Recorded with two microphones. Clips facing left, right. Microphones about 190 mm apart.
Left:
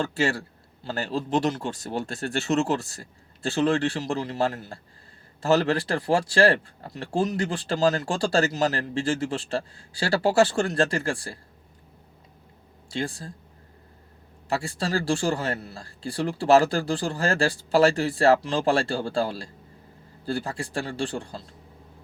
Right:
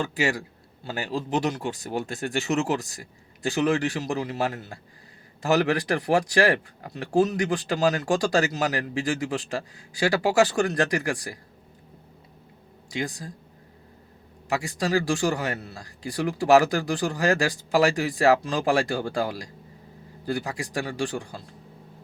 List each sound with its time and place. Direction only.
0.1 s speech: 15° right (ahead or behind)
12.9 s speech: 15° right (ahead or behind)
14.5 s speech: 15° right (ahead or behind)